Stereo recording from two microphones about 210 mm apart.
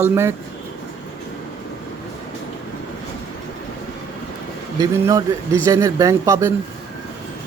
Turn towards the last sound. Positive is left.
turn(degrees=-15)  # may be behind; listen again after turning